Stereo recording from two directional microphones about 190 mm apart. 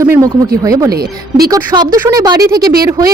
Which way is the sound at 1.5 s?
20° right (ahead or behind).